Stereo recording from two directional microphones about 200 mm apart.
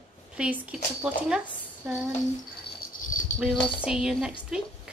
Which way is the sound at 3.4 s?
5° right (ahead or behind).